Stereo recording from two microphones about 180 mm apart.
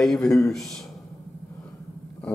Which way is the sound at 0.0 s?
5° left (ahead or behind).